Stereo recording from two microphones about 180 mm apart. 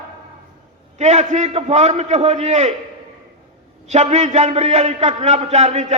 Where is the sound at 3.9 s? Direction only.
40° right (ahead or behind).